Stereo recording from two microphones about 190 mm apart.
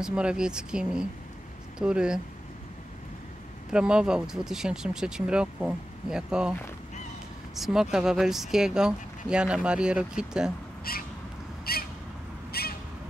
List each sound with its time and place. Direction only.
0.0 s speech: 5° right (ahead or behind)
3.7 s speech: 5° right (ahead or behind)
7.5 s speech: centre (ahead or behind)
10.8 s a sound: 50° left (ahead or behind)
11.7 s bird: 55° left (ahead or behind)
12.5 s a sound: 55° left (ahead or behind)